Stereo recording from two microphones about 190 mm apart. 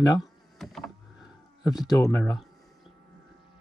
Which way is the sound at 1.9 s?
15° left (ahead or behind).